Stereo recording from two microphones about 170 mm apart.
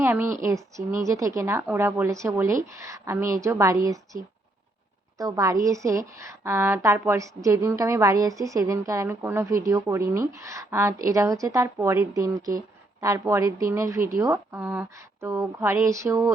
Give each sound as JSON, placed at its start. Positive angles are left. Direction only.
{"t": 0.0, "sound": "a woman's voice", "side_deg": -15}